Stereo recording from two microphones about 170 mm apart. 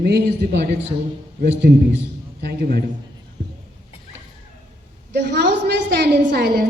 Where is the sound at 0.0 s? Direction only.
70° right (ahead or behind).